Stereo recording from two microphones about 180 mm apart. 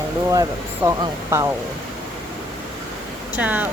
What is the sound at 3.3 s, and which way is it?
Speech, 10° right (ahead or behind).